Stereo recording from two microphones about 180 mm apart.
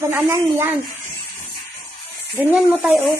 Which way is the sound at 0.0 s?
10° right (ahead or behind).